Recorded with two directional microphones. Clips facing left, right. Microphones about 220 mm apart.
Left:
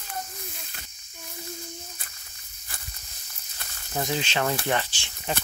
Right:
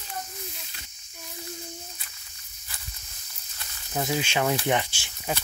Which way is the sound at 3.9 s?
5° right (ahead or behind).